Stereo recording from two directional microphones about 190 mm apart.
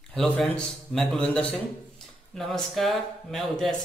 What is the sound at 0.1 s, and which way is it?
Speech, 5° left (ahead or behind).